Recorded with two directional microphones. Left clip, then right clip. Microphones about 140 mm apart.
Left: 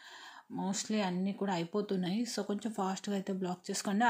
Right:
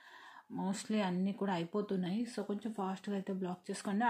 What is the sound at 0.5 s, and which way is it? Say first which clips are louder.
Speech: left 2 dB; 10° left (ahead or behind).